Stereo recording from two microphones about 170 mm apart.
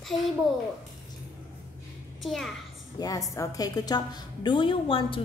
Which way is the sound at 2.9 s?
20° left (ahead or behind).